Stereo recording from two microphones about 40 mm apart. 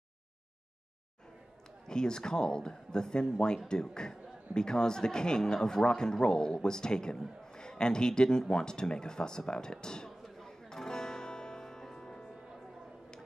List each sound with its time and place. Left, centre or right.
1.9 s speech: centre
10.4 s music: centre